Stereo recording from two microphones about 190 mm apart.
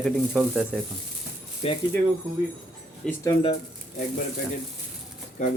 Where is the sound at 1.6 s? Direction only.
30° left (ahead or behind).